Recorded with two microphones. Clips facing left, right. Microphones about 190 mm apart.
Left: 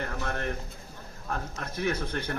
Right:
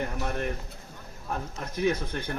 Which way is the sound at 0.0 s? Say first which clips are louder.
Right 2 dB; 15° right (ahead or behind).